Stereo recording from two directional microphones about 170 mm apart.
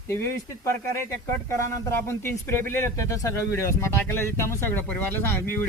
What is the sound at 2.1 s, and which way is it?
Speech, 15° left (ahead or behind).